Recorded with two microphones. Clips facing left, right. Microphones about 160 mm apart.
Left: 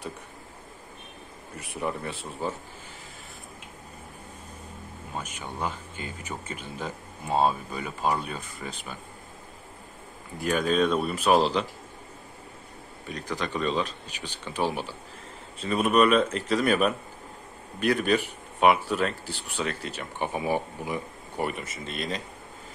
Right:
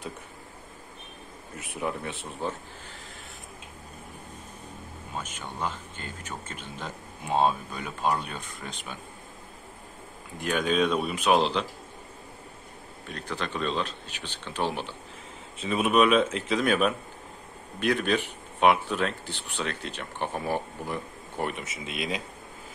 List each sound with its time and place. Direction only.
1.6 s speech: centre (ahead or behind)
5.1 s speech: 10° left (ahead or behind)
10.4 s speech: centre (ahead or behind)
13.1 s speech: 10° left (ahead or behind)